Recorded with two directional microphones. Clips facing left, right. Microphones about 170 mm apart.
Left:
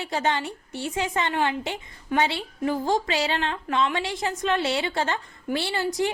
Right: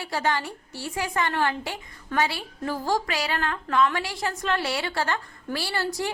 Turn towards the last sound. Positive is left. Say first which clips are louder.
# left 3 dB
turn(degrees=20)  # may be behind; listen again after turning